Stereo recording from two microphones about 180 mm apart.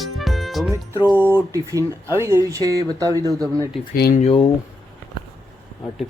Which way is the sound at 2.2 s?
15° right (ahead or behind).